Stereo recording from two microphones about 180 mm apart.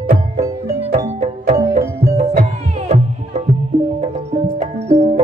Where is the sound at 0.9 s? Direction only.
40° right (ahead or behind).